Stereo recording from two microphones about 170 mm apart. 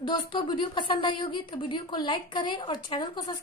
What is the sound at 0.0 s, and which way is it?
A woman's voice, 25° left (ahead or behind).